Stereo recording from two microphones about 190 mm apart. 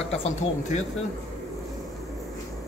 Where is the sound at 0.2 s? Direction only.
40° left (ahead or behind).